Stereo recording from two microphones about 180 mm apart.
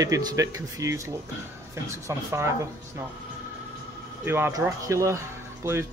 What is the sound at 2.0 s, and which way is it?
Speech, 15° right (ahead or behind).